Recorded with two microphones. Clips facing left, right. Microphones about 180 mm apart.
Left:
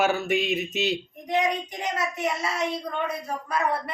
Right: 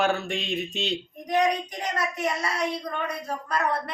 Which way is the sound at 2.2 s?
25° left (ahead or behind).